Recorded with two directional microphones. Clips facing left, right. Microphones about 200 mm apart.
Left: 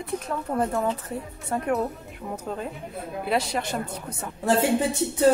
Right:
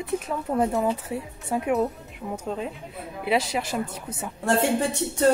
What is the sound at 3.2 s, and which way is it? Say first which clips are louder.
Speech: right 2 dB; 5° right (ahead or behind).